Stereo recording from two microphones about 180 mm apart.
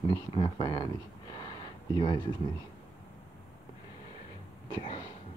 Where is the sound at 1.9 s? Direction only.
25° left (ahead or behind).